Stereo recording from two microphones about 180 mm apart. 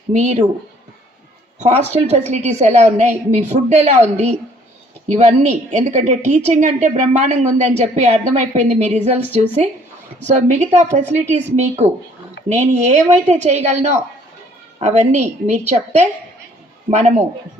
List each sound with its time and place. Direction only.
0.1 s a woman's voice: 40° right (ahead or behind)
1.6 s a woman's voice: 35° right (ahead or behind)